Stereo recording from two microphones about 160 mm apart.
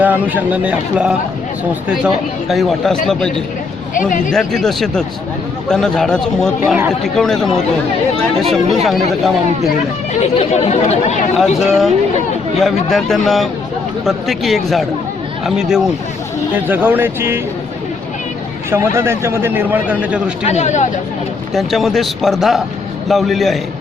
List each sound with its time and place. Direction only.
0.0 s speech: 10° right (ahead or behind)
10.2 s speech: 45° left (ahead or behind)
11.3 s speech: centre (ahead or behind)
18.7 s speech: 15° right (ahead or behind)
20.4 s speech: 45° left (ahead or behind)
21.5 s speech: centre (ahead or behind)